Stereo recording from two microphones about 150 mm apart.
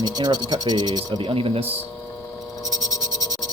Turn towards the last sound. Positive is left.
turn(degrees=-40)  # may be behind; listen again after turning